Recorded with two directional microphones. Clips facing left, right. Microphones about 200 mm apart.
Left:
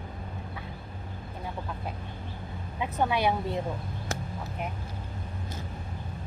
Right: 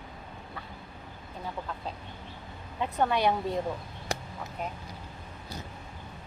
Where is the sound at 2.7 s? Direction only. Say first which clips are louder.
Even; 5° left (ahead or behind).